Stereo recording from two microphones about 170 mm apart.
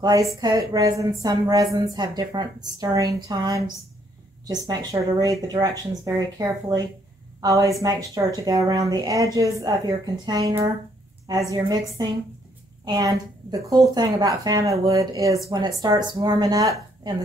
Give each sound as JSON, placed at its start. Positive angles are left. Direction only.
{"t": 0.0, "sound": "a woman's voice", "side_deg": -20}